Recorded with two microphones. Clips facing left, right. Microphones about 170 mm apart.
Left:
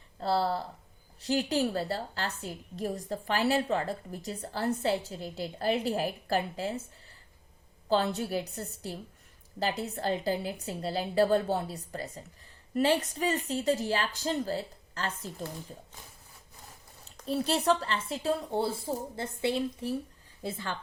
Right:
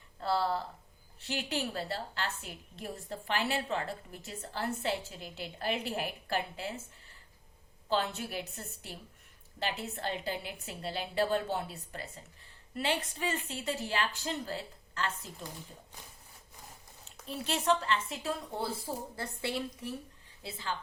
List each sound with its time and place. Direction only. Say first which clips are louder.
0.2 s a woman's voice: left 3 dB; 35° left (ahead or behind)
7.9 s a woman's voice: left 5 dB; 35° left (ahead or behind)
17.2 s a woman's voice: left 4 dB; 35° left (ahead or behind)
19.1 s a woman's voice: left 7 dB; 20° left (ahead or behind)
20.4 s a woman's voice: left 3 dB; 50° left (ahead or behind)